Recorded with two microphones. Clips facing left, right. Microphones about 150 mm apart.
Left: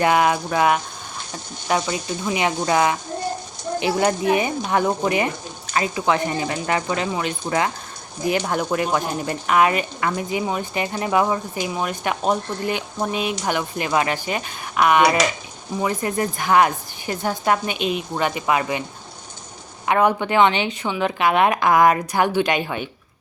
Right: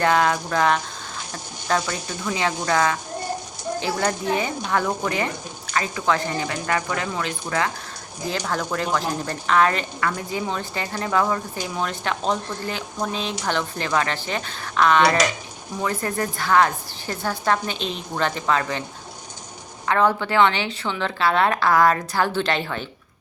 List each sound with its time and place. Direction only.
0.0 s speech: 15° left (ahead or behind)
19.8 s speech: 15° left (ahead or behind)